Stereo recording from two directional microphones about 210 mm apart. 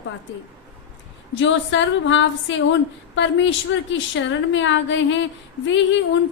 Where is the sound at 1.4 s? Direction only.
60° left (ahead or behind).